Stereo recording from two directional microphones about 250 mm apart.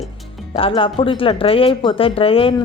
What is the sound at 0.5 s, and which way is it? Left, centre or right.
Speech, left.